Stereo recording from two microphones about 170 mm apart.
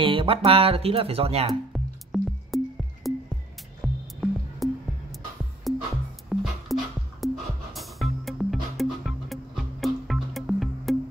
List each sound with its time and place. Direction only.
0.0 s speech: 30° right (ahead or behind)
1.5 s music: centre (ahead or behind)